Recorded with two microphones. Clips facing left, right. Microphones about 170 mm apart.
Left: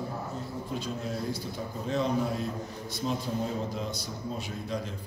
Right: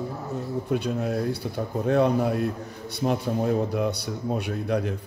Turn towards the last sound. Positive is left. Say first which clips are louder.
# right 8 dB
turn(degrees=-65)  # may be behind; listen again after turning